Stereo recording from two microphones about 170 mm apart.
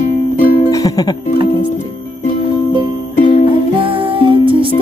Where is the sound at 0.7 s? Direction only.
20° left (ahead or behind).